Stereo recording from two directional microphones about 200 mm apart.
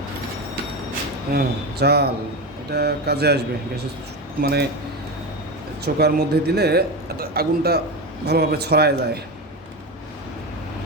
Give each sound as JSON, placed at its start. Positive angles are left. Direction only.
{"t": 1.3, "sound": "a man's voice", "side_deg": -50}
{"t": 5.8, "sound": "a man's voice", "side_deg": -55}